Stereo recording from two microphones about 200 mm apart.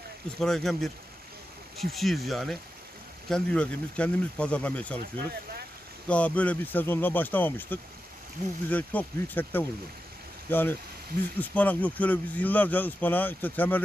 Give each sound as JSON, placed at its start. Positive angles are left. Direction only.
{"t": 0.4, "sound": "speech", "side_deg": 0}
{"t": 6.0, "sound": "speech", "side_deg": 5}